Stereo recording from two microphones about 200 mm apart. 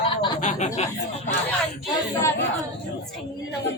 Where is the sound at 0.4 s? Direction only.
35° left (ahead or behind).